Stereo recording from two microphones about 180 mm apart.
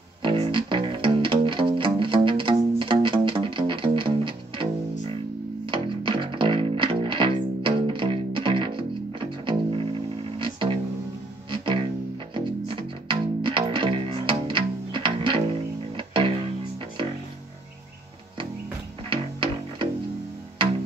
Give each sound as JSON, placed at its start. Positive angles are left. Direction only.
{"t": 0.2, "sound": "music", "side_deg": -25}
{"t": 5.7, "sound": "music", "side_deg": -25}
{"t": 19.0, "sound": "music", "side_deg": -25}